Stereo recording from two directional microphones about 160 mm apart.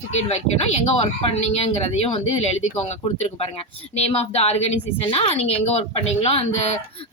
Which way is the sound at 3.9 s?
40° left (ahead or behind).